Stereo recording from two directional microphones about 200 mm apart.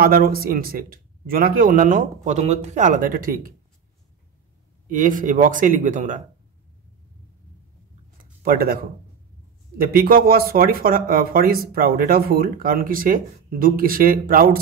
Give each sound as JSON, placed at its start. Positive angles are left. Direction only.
{"t": 0.0, "sound": "speech", "side_deg": -45}
{"t": 4.8, "sound": "speech", "side_deg": -40}
{"t": 8.2, "sound": "a sound", "side_deg": -45}
{"t": 9.8, "sound": "speech", "side_deg": -45}